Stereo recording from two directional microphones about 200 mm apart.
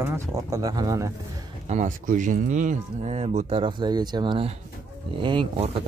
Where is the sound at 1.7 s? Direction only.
40° right (ahead or behind).